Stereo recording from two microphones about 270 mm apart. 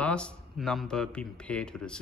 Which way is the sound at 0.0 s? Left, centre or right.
Centre.